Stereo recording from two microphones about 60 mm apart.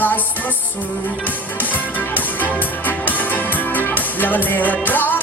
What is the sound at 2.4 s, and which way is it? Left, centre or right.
Music, left.